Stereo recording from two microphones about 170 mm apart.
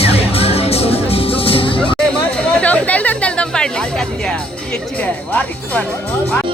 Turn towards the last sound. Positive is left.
turn(degrees=10)  # may be behind; listen again after turning